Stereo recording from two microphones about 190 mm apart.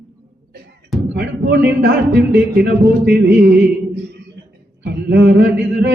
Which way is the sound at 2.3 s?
60° right (ahead or behind).